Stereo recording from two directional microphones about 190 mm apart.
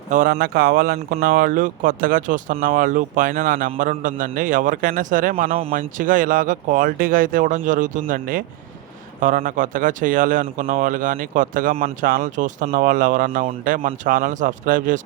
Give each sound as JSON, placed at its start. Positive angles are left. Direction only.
{"t": 0.1, "sound": "speech", "side_deg": -50}